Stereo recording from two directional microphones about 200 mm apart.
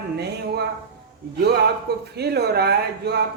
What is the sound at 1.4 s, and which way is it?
A man's voice, 55° right (ahead or behind).